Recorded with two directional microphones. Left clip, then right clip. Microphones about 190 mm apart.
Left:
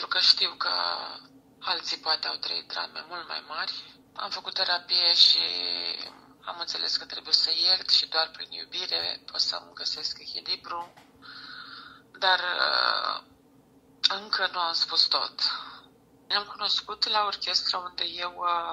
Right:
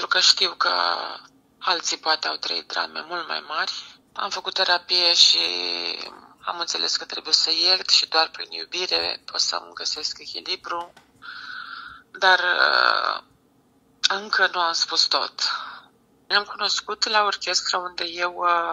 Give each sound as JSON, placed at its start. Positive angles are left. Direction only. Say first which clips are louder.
{"t": 0.0, "sound": "speech", "louder": "right 4 dB", "side_deg": -35}